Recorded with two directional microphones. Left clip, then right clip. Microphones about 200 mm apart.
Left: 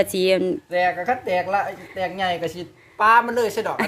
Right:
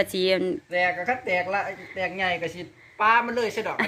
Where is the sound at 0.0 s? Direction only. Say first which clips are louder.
Left 4 dB; 10° left (ahead or behind).